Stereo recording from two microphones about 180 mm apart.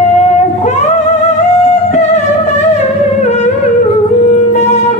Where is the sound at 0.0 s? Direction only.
40° left (ahead or behind).